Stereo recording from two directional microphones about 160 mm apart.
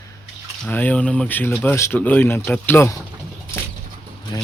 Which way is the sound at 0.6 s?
10° left (ahead or behind).